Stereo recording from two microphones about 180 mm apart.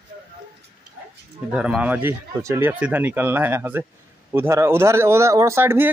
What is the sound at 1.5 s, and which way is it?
Speech, 5° right (ahead or behind).